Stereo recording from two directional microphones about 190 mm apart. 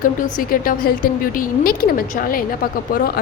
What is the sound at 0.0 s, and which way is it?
A woman's voice, 45° left (ahead or behind).